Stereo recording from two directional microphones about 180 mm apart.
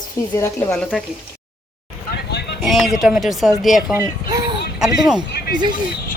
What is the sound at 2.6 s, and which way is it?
Speech, centre (ahead or behind).